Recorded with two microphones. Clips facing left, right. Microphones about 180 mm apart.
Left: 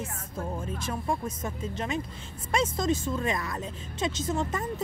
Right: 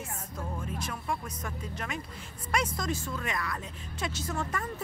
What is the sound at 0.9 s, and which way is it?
A woman's voice, 25° left (ahead or behind).